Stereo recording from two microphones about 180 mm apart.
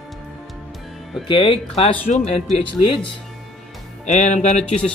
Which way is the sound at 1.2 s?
30° left (ahead or behind).